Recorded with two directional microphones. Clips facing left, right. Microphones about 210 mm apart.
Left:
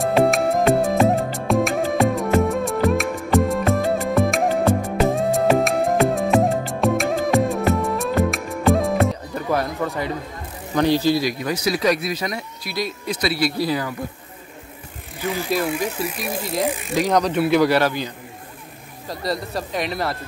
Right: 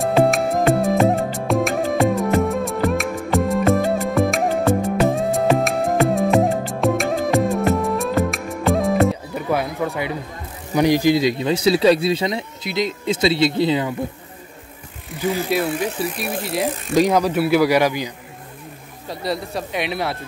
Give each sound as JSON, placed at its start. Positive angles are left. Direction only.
{"t": 0.0, "sound": "music", "side_deg": 0}
{"t": 10.7, "sound": "speech", "side_deg": -15}
{"t": 15.5, "sound": "speech", "side_deg": 0}
{"t": 19.0, "sound": "speech", "side_deg": 0}